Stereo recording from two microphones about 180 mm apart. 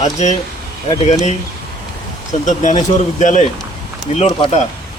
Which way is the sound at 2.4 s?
40° left (ahead or behind).